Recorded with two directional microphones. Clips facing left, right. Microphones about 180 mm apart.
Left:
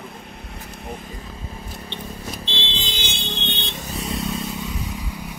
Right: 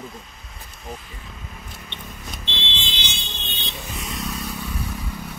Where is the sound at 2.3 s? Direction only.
30° left (ahead or behind); by 3.7 s 65° left (ahead or behind).